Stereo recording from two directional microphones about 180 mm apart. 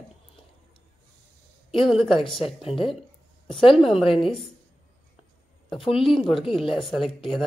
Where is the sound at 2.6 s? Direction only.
30° left (ahead or behind).